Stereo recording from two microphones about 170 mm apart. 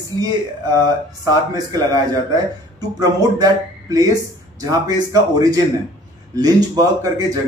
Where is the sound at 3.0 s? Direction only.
20° right (ahead or behind).